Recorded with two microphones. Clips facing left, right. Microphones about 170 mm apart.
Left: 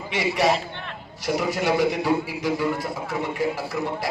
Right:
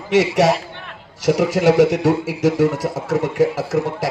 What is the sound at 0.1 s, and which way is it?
Speech, 90° right.